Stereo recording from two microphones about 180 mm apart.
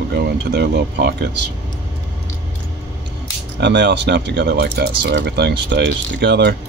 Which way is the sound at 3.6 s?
70° right (ahead or behind).